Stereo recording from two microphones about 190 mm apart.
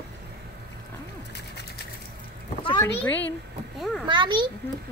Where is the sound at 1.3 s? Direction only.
60° left (ahead or behind).